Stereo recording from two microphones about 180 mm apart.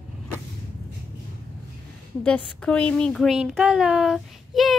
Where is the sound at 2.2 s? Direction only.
5° left (ahead or behind).